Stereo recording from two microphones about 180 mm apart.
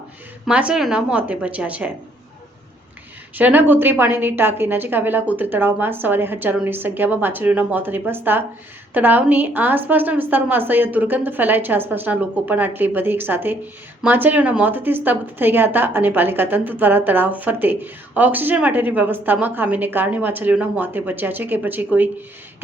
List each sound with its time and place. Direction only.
0.4 s a woman's voice: 5° right (ahead or behind)
3.3 s a woman's voice: 10° right (ahead or behind)